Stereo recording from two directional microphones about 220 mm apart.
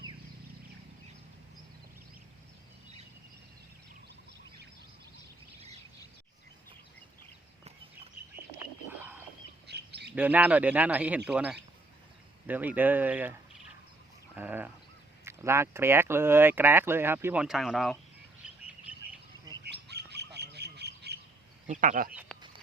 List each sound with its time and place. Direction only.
8.9 s wild animals: 10° right (ahead or behind)
9.6 s bird: 50° right (ahead or behind)
10.2 s speech: 5° right (ahead or behind)
18.9 s bird: 5° right (ahead or behind)
19.6 s bird: 50° right (ahead or behind)
21.7 s speech: 35° right (ahead or behind)
22.1 s speech: 5° right (ahead or behind)